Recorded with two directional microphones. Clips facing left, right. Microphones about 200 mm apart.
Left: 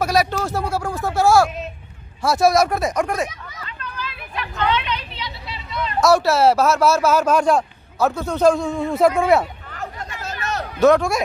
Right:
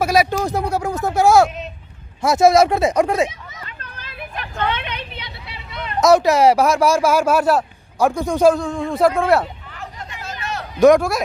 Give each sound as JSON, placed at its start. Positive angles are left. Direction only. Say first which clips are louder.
{"t": 0.0, "sound": "speech", "louder": "right 2 dB", "side_deg": -10}
{"t": 3.6, "sound": "vehicle", "louder": "left 10 dB", "side_deg": -50}
{"t": 5.9, "sound": "speech", "louder": "right 3 dB", "side_deg": -20}
{"t": 9.7, "sound": "hubbub", "louder": "left 3 dB", "side_deg": 45}
{"t": 10.8, "sound": "speech", "louder": "right 3 dB", "side_deg": -15}